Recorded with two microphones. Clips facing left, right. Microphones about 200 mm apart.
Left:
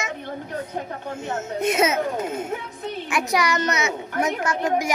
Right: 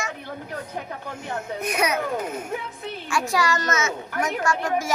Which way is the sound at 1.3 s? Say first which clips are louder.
Left 5 dB; 25° left (ahead or behind).